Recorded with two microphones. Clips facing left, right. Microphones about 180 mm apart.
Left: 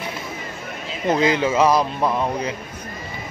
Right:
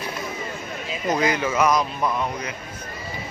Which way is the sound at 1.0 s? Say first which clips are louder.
Left 4 dB; 25° left (ahead or behind).